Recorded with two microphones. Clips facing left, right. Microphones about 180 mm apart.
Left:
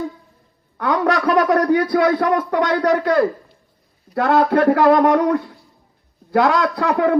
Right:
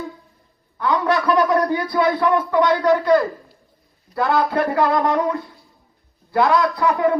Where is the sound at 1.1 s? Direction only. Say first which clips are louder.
Even; 85° left.